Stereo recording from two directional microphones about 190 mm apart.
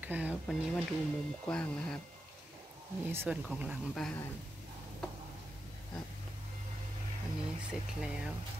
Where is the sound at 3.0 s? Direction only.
10° right (ahead or behind); by 4.2 s 5° left (ahead or behind).